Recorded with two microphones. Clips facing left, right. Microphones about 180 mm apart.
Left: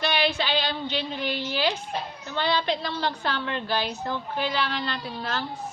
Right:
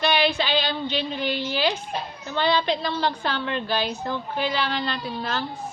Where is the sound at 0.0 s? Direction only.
20° right (ahead or behind).